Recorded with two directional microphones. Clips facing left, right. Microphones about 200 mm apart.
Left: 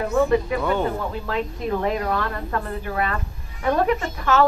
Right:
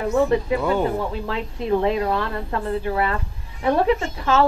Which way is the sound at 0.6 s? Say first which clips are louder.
Right 1 dB; 10° right (ahead or behind).